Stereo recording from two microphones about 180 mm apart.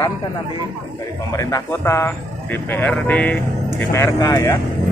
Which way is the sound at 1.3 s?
15° left (ahead or behind).